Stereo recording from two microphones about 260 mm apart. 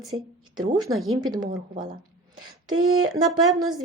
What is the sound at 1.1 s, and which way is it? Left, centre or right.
Speech, centre.